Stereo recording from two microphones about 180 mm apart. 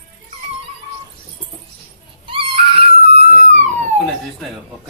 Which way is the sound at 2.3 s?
30° right (ahead or behind).